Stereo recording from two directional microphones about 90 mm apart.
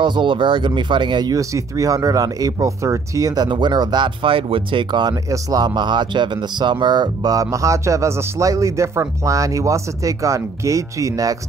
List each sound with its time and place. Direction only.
0.0 s speech: 65° right (ahead or behind)
1.3 s speech: 35° right (ahead or behind)
3.4 s speech: 60° right (ahead or behind)
5.3 s speech: 45° right (ahead or behind)